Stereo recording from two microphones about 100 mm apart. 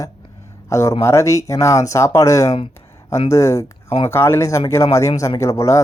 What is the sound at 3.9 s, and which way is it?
Speech, 90° left.